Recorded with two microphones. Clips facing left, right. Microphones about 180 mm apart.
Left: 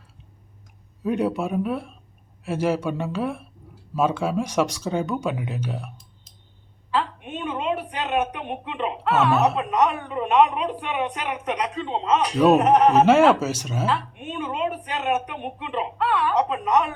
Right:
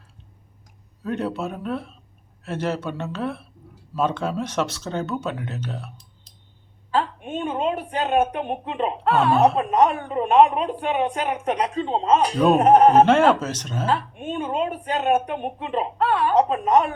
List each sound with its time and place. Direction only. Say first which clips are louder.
1.0 s speech: left 3 dB; 10° left (ahead or behind)
6.9 s a sound: right 2 dB; 45° right (ahead or behind)
8.2 s speech: right 4 dB; 40° right (ahead or behind)
9.2 s speech: right 4 dB; 30° right (ahead or behind)
9.9 s speech: right 3 dB; 40° right (ahead or behind)
11.3 s speech: right 3 dB; 30° right (ahead or behind)
12.5 s speech: right 3 dB; 30° right (ahead or behind)
13.1 s speech: left 1 dB; 5° left (ahead or behind)
13.8 s speech: right 2 dB; 45° right (ahead or behind)